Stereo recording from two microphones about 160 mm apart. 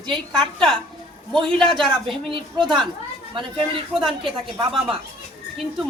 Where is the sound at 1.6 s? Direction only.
5° left (ahead or behind).